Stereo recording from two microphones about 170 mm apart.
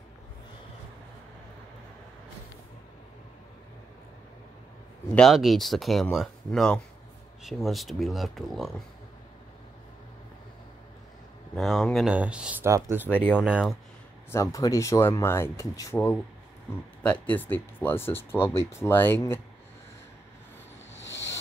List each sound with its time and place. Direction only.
5.1 s speech: centre (ahead or behind)
11.5 s speech: centre (ahead or behind); by 13.1 s 15° right (ahead or behind)
13.1 s speech: 10° left (ahead or behind)
13.4 s speech: 5° right (ahead or behind)
14.3 s speech: 20° left (ahead or behind)